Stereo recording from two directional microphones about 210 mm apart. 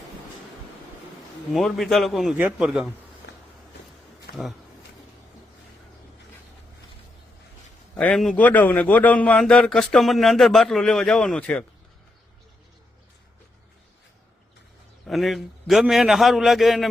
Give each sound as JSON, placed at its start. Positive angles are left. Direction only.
{"t": 1.5, "sound": "a man's voice", "side_deg": 0}
{"t": 4.3, "sound": "a sound", "side_deg": 50}
{"t": 7.9, "sound": "a man's voice", "side_deg": 5}
{"t": 15.0, "sound": "a man's voice", "side_deg": 0}